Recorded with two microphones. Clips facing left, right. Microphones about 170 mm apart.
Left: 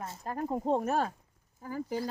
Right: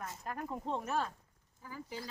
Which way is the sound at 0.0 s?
30° left (ahead or behind).